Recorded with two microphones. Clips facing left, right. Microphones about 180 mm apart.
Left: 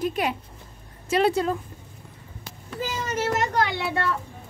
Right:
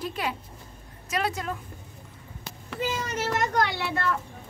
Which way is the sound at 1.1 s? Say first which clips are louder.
Left 8 dB; 30° left (ahead or behind).